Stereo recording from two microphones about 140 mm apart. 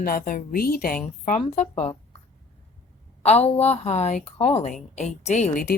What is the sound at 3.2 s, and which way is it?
A woman's voice, 50° left (ahead or behind).